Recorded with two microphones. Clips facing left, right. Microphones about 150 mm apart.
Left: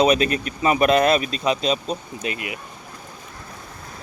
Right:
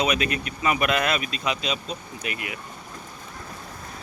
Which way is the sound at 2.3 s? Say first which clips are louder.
Left 3 dB; 25° left (ahead or behind).